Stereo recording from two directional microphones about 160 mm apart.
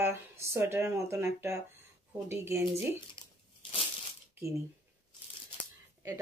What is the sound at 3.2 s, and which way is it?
Tearing, 30° left (ahead or behind).